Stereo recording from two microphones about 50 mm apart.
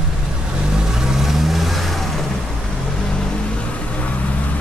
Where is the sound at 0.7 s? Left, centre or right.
Centre.